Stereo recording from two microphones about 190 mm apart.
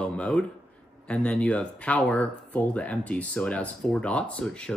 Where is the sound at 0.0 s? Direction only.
5° left (ahead or behind).